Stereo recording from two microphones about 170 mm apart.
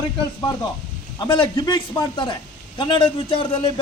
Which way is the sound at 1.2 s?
25° left (ahead or behind).